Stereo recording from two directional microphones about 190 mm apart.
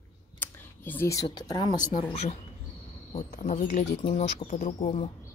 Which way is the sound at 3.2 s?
40° left (ahead or behind).